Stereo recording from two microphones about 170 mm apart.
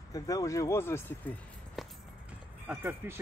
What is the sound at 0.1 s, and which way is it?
Speech, 20° left (ahead or behind).